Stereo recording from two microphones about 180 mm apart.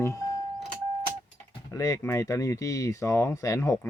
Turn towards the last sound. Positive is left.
turn(degrees=15)  # may be behind; listen again after turning